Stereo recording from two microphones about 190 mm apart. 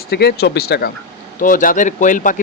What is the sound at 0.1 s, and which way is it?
Speech, 55° left (ahead or behind).